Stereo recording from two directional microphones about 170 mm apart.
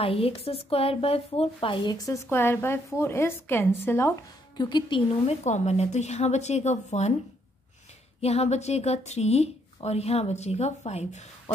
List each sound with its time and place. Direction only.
0.0 s speech: 35° left (ahead or behind); by 4.1 s 15° left (ahead or behind)
4.6 s a woman's voice: 25° left (ahead or behind); by 7.2 s 40° left (ahead or behind)
8.2 s a woman's voice: 40° left (ahead or behind)